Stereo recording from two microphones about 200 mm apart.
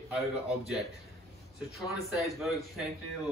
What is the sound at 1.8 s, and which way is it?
Speech, centre (ahead or behind).